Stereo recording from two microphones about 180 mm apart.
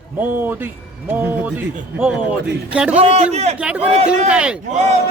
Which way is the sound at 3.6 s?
5° right (ahead or behind).